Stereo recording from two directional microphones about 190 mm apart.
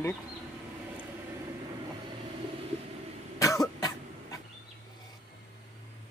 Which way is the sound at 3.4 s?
20° left (ahead or behind).